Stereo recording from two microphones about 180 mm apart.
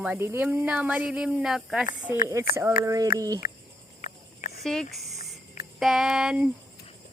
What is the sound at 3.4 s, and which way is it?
Cricket, 50° left (ahead or behind).